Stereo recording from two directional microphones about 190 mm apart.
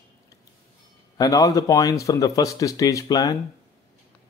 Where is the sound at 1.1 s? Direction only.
20° left (ahead or behind).